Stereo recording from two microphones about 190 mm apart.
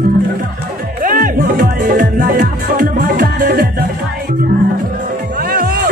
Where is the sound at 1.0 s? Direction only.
50° right (ahead or behind).